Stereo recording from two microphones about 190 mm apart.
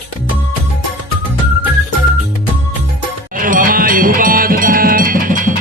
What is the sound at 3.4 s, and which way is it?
Music, 45° right (ahead or behind).